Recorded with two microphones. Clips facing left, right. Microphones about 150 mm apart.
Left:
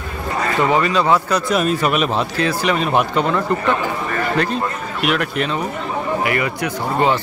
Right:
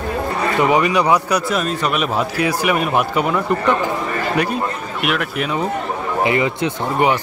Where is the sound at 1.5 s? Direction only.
5° left (ahead or behind).